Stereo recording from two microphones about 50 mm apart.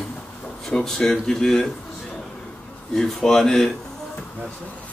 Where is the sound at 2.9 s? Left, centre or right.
Centre.